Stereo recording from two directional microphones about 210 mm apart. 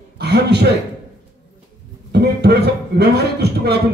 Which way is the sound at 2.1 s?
50° right (ahead or behind).